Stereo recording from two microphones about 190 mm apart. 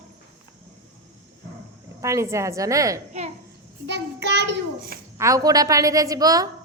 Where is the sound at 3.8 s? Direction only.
65° right (ahead or behind).